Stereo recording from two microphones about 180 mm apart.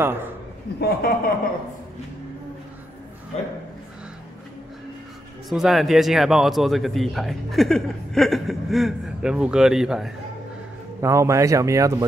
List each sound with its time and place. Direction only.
0.7 s a man's voice: 60° left (ahead or behind)
5.5 s speech: centre (ahead or behind)
11.0 s speech: 15° right (ahead or behind)